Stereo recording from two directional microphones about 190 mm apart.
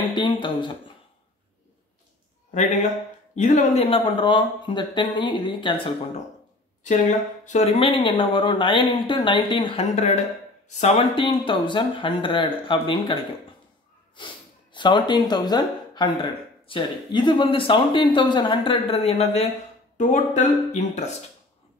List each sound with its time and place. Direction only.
0.0 s speech: 25° left (ahead or behind)
2.5 s speech: 40° left (ahead or behind)
6.8 s speech: 40° left (ahead or behind)